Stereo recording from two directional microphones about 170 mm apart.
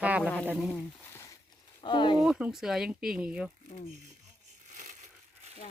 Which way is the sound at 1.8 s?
30° left (ahead or behind).